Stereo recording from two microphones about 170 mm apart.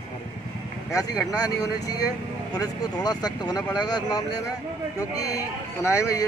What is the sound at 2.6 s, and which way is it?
Speech, 25° left (ahead or behind).